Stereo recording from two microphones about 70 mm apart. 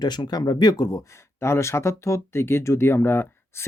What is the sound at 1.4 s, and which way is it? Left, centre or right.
Speech, left.